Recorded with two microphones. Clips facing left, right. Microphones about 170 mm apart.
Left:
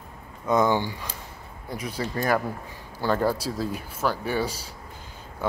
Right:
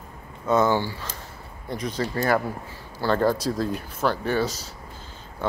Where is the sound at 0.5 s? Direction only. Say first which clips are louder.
Right 1 dB; 15° left (ahead or behind).